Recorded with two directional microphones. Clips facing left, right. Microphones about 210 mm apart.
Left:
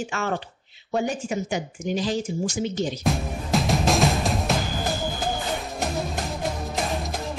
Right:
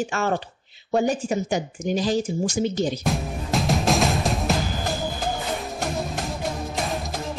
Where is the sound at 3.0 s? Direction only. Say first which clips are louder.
Even; centre (ahead or behind).